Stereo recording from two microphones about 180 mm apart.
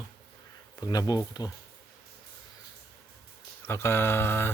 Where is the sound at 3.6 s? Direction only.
15° left (ahead or behind).